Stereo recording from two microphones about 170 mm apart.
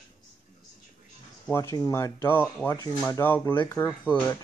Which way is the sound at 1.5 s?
15° left (ahead or behind).